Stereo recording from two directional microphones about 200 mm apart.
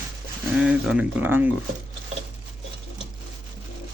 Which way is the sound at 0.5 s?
5° right (ahead or behind).